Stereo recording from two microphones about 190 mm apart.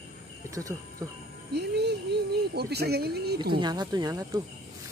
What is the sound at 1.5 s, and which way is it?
Speech, 60° right (ahead or behind).